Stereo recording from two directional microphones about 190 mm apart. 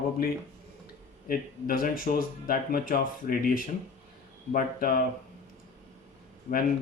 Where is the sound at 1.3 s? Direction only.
50° left (ahead or behind).